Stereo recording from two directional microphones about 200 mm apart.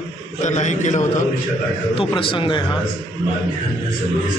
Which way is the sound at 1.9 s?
25° left (ahead or behind).